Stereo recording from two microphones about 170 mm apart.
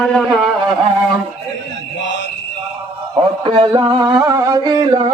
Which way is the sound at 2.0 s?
90° left.